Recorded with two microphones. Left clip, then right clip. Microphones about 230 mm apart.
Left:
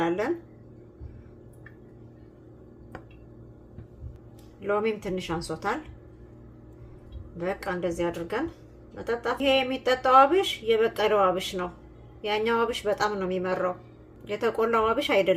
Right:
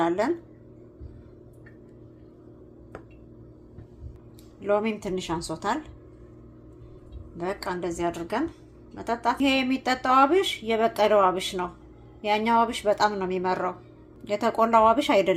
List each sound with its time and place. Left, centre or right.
4.6 s speech: centre
7.4 s speech: centre